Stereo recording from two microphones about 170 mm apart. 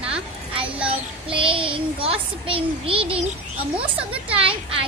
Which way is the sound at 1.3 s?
30° right (ahead or behind).